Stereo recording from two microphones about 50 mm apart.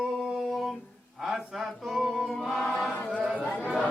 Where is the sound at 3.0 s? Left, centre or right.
Centre.